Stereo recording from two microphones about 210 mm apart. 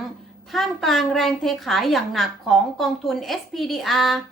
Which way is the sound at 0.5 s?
Centre (ahead or behind).